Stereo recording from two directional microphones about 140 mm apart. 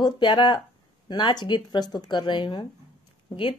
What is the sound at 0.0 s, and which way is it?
A woman's voice, 35° left (ahead or behind).